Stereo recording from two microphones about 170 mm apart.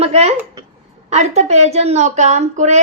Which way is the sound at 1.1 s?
40° right (ahead or behind).